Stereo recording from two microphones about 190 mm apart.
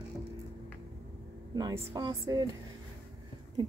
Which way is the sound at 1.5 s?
20° right (ahead or behind).